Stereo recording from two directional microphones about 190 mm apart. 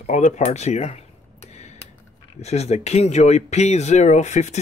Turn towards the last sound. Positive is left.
turn(degrees=35)  # may be behind; listen again after turning